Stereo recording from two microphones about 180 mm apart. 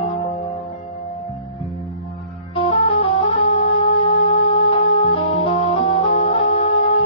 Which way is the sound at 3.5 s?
30° left (ahead or behind).